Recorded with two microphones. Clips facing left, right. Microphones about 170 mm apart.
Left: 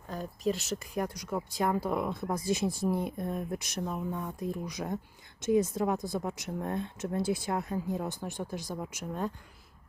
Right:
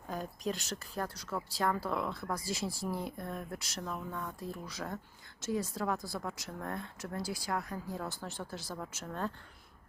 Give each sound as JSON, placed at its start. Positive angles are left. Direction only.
{"t": 0.1, "sound": "a woman's voice", "side_deg": 0}